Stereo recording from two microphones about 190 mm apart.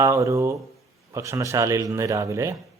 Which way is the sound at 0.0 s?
15° right (ahead or behind).